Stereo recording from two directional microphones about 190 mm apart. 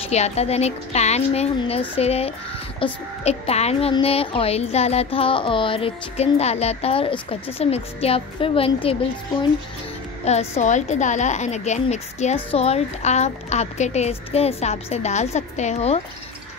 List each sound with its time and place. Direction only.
0.1 s a woman's voice: 35° left (ahead or behind)
10.2 s a woman's voice: 35° left (ahead or behind)